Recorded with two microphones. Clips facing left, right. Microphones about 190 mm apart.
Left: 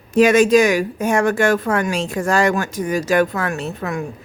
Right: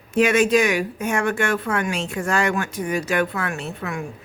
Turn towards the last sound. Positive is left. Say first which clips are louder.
# left 5 dB
turn(degrees=40)  # may be behind; listen again after turning